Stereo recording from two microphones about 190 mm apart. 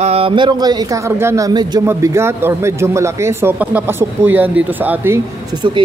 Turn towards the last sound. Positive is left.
turn(degrees=-25)  # may be behind; listen again after turning